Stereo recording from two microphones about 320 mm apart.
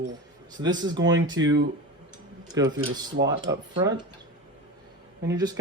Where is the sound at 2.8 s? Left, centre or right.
Centre.